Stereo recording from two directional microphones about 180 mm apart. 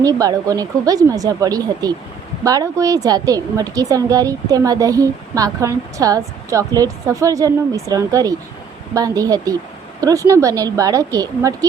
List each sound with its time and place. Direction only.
0.0 s a woman's voice: 20° right (ahead or behind)